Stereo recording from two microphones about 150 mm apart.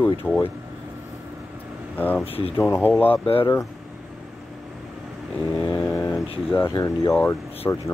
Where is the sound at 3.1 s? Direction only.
40° left (ahead or behind).